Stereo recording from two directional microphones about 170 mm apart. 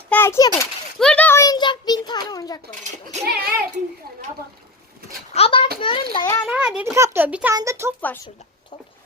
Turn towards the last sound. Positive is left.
turn(degrees=-15)  # may be behind; listen again after turning